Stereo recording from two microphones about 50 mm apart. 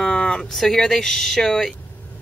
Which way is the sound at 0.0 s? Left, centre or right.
Centre.